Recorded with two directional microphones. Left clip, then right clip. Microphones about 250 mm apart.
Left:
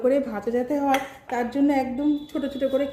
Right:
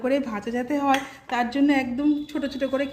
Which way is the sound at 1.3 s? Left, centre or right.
Right.